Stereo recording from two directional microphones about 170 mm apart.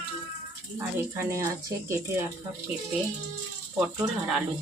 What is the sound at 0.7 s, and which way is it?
Speech, 15° right (ahead or behind).